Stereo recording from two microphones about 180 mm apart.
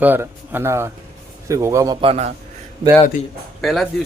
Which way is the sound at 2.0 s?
35° right (ahead or behind).